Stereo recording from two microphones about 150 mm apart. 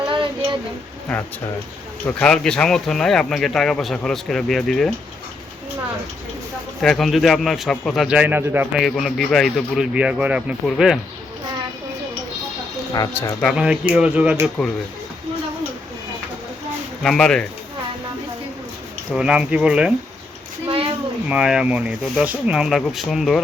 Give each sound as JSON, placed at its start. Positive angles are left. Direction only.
{"t": 2.0, "sound": "speech", "side_deg": 10}
{"t": 6.8, "sound": "speech", "side_deg": 0}
{"t": 8.7, "sound": "speech", "side_deg": 0}
{"t": 12.9, "sound": "speech", "side_deg": 25}
{"t": 13.4, "sound": "speech", "side_deg": -5}
{"t": 14.6, "sound": "speech", "side_deg": 5}
{"t": 17.0, "sound": "speech", "side_deg": 5}
{"t": 19.1, "sound": "speech", "side_deg": -5}
{"t": 20.7, "sound": "a sound", "side_deg": -35}
{"t": 21.2, "sound": "speech", "side_deg": -5}